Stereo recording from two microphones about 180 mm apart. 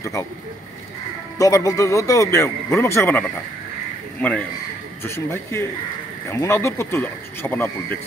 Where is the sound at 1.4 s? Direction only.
20° left (ahead or behind).